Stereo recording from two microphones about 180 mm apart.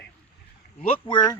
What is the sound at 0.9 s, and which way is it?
Speech, 25° left (ahead or behind).